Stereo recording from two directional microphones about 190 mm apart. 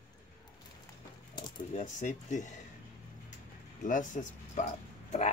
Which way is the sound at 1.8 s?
40° left (ahead or behind).